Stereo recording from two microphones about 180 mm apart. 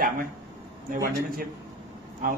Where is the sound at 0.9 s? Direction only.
55° right (ahead or behind).